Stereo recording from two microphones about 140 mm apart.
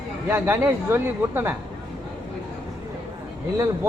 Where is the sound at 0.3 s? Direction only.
15° right (ahead or behind).